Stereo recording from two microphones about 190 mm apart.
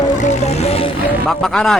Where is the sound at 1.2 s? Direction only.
Centre (ahead or behind).